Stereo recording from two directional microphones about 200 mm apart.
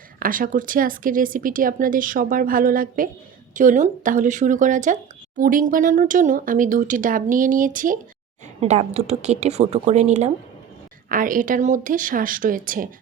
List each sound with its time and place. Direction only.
0.2 s speech: 45° right (ahead or behind)